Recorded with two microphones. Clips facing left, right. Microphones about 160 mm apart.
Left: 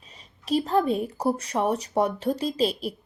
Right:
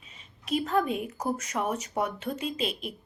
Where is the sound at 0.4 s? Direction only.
35° left (ahead or behind).